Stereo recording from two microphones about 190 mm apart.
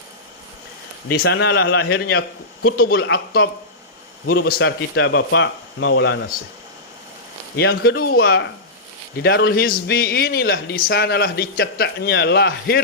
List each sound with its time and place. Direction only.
1.1 s a man's voice: 60° left (ahead or behind)
4.3 s speech: 50° left (ahead or behind); by 6.1 s 70° left (ahead or behind)
7.5 s a man's voice: 55° left (ahead or behind)